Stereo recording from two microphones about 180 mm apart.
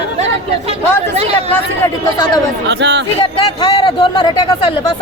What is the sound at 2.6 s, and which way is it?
Speech, 70° right (ahead or behind).